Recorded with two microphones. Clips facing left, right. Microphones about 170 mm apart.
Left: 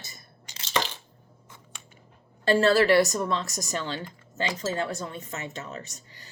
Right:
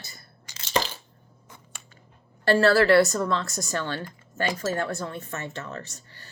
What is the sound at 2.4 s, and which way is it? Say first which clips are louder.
Speech: right 1 dB; 20° left (ahead or behind).